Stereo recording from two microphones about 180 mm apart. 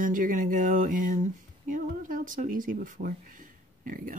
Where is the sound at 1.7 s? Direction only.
45° right (ahead or behind).